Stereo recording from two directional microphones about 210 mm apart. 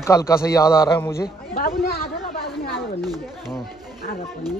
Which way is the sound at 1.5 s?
45° left (ahead or behind).